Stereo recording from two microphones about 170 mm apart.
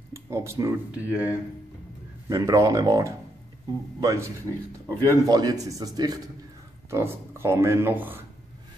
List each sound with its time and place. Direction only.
0.1 s speech: 15° right (ahead or behind)
2.2 s speech: 20° right (ahead or behind)